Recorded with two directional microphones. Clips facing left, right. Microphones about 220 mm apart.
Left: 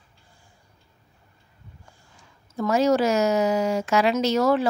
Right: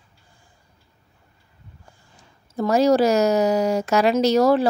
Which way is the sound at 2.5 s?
35° right (ahead or behind).